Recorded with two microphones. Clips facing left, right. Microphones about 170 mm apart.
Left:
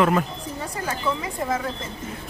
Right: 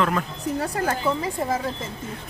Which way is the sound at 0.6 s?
60° right (ahead or behind).